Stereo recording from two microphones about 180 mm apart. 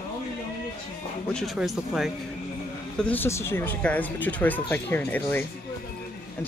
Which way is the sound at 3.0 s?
10° left (ahead or behind).